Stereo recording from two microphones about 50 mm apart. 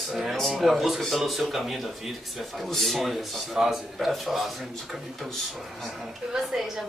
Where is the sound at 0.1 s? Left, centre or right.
Centre.